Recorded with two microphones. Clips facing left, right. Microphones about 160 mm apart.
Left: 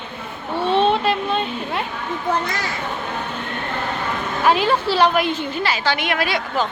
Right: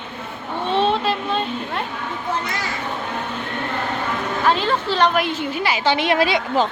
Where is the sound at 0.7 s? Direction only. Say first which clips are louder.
Left 2 dB; centre (ahead or behind).